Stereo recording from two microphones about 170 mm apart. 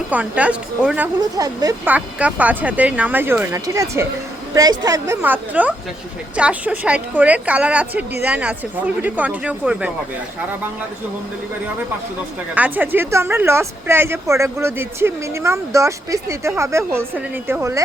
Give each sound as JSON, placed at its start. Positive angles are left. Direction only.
{"t": 0.1, "sound": "speech", "side_deg": -10}
{"t": 1.4, "sound": "a woman's voice", "side_deg": -20}
{"t": 1.9, "sound": "a woman's voice", "side_deg": -5}
{"t": 5.2, "sound": "speech", "side_deg": -10}
{"t": 12.5, "sound": "speech", "side_deg": -10}